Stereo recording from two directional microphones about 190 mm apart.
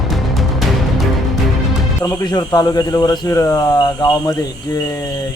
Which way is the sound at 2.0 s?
15° left (ahead or behind).